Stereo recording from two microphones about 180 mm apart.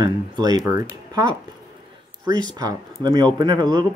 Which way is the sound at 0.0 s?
20° right (ahead or behind).